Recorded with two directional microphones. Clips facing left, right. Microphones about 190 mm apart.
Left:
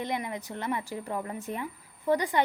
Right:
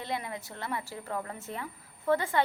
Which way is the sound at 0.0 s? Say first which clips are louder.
Left 3 dB; 15° left (ahead or behind).